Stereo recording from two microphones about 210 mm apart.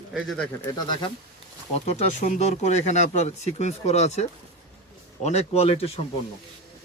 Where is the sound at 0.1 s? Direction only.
Centre (ahead or behind).